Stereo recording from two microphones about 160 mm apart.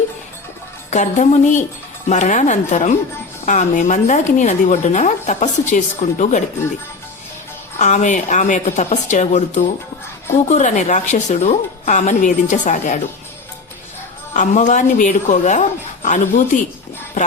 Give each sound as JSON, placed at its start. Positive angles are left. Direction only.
{"t": 0.9, "sound": "speech", "side_deg": 50}
{"t": 7.8, "sound": "speech", "side_deg": 50}
{"t": 14.3, "sound": "speech", "side_deg": 50}